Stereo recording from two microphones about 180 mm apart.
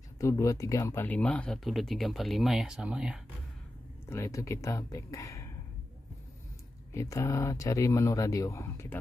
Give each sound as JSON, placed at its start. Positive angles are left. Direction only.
{"t": 0.2, "sound": "speech", "side_deg": 15}
{"t": 4.0, "sound": "speech", "side_deg": 15}
{"t": 6.9, "sound": "speech", "side_deg": 15}